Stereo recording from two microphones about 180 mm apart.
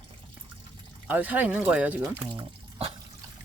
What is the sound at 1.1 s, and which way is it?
Speech, 10° right (ahead or behind).